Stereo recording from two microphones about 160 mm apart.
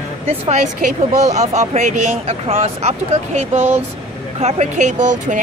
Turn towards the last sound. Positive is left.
turn(degrees=-50)  # may be behind; listen again after turning